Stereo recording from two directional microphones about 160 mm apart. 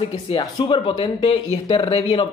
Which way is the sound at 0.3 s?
30° left (ahead or behind).